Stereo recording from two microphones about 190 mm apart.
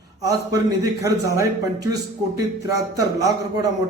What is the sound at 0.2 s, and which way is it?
A man's voice, 20° right (ahead or behind).